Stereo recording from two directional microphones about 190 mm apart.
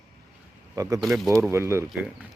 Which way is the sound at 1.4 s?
15° right (ahead or behind).